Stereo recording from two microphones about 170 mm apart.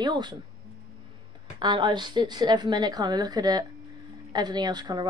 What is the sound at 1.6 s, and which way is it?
A woman's voice, 25° right (ahead or behind).